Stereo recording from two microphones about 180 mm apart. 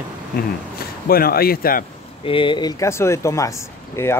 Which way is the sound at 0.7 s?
55° left (ahead or behind).